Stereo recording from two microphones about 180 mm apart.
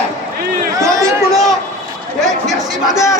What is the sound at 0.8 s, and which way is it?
Speech, 15° right (ahead or behind).